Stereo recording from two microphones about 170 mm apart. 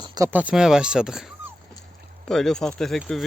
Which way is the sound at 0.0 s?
25° right (ahead or behind).